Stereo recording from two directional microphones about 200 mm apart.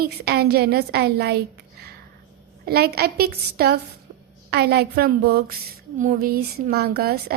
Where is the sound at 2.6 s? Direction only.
50° right (ahead or behind).